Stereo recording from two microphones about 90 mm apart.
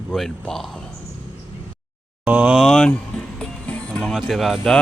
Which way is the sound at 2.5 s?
5° left (ahead or behind).